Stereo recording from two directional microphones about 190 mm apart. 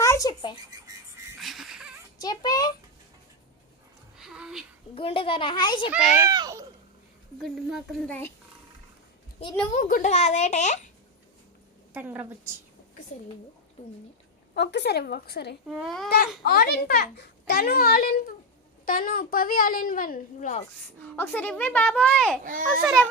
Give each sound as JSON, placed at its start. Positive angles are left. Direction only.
{"t": 0.0, "sound": "a sound", "side_deg": 15}
{"t": 1.4, "sound": "a sound", "side_deg": 0}
{"t": 2.2, "sound": "a child's voice", "side_deg": 20}
{"t": 4.2, "sound": "a sound", "side_deg": -5}
{"t": 4.9, "sound": "a child's voice", "side_deg": 30}
{"t": 5.9, "sound": "speech", "side_deg": -20}
{"t": 7.3, "sound": "speech", "side_deg": 0}
{"t": 9.7, "sound": "a child's voice", "side_deg": 45}
{"t": 11.9, "sound": "a woman's voice", "side_deg": -10}
{"t": 14.5, "sound": "a child's voice", "side_deg": 65}
{"t": 15.7, "sound": "speech", "side_deg": 0}
{"t": 16.4, "sound": "a child's voice", "side_deg": 55}
{"t": 21.2, "sound": "a woman's voice", "side_deg": 10}